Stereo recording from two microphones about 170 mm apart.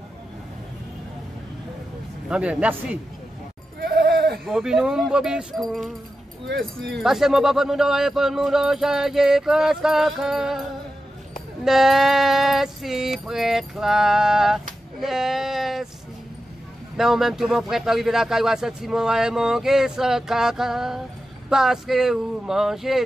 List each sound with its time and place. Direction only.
2.2 s speech: 5° right (ahead or behind)
3.8 s goat: 65° right (ahead or behind)
4.5 s speech: centre (ahead or behind)
7.0 s speech: centre (ahead or behind)
11.6 s a sound: centre (ahead or behind)
16.9 s speech: centre (ahead or behind)